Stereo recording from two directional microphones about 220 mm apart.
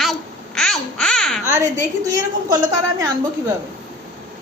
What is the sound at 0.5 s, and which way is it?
Babbling, centre (ahead or behind).